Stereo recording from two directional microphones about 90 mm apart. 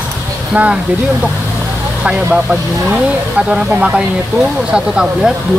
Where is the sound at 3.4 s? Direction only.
10° right (ahead or behind).